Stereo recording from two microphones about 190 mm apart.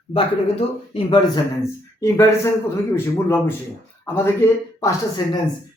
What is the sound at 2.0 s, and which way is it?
Speech, 15° left (ahead or behind).